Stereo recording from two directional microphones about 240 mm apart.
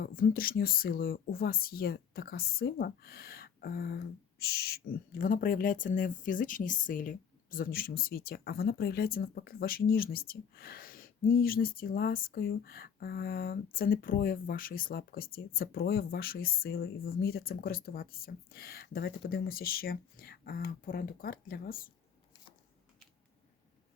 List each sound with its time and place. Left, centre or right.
0.0 s speech: left